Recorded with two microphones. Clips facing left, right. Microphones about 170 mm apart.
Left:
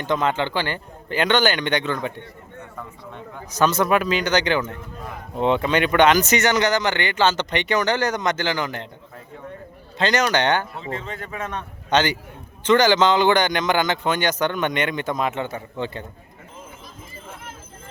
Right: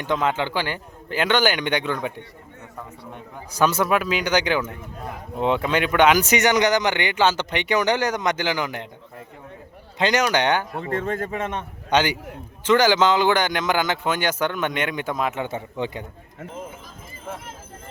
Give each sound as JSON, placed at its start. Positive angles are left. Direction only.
{"t": 0.0, "sound": "speech", "side_deg": -10}
{"t": 3.3, "sound": "speech", "side_deg": -10}
{"t": 10.0, "sound": "speech", "side_deg": -10}
{"t": 10.9, "sound": "a man's voice", "side_deg": -50}
{"t": 11.3, "sound": "a man's voice", "side_deg": -25}
{"t": 11.9, "sound": "a man's voice", "side_deg": -10}
{"t": 15.4, "sound": "speech", "side_deg": -20}